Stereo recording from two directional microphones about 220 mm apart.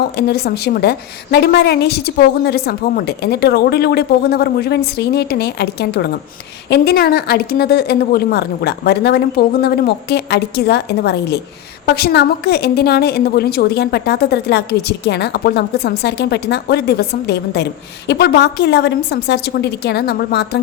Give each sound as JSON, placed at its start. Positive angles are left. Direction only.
{"t": 0.2, "sound": "a woman's voice", "side_deg": 45}